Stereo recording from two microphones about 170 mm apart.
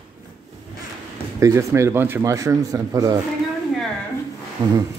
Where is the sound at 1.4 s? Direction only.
15° right (ahead or behind).